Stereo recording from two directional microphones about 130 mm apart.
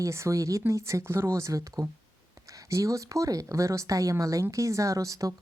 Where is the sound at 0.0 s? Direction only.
20° right (ahead or behind).